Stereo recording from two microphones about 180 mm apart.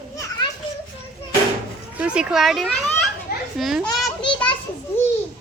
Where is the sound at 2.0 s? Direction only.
5° right (ahead or behind).